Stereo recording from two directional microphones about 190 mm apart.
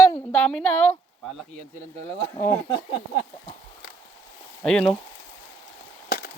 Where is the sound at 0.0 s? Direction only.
10° left (ahead or behind).